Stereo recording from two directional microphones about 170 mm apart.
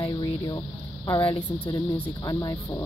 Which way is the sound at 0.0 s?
25° left (ahead or behind).